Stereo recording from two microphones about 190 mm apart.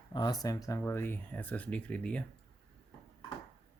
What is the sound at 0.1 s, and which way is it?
Speech, 20° left (ahead or behind).